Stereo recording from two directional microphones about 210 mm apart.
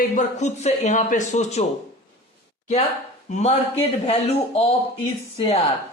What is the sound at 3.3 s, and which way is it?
A man's voice, 30° left (ahead or behind).